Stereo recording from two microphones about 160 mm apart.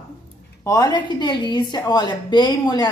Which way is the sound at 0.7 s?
25° left (ahead or behind).